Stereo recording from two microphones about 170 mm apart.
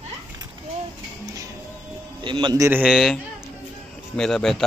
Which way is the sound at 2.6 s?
5° right (ahead or behind).